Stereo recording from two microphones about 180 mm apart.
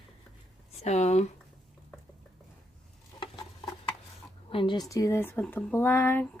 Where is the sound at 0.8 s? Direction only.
40° left (ahead or behind).